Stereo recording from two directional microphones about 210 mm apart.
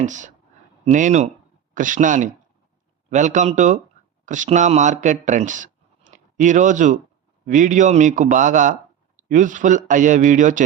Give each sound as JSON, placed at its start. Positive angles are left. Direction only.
{"t": 0.0, "sound": "speech", "side_deg": -35}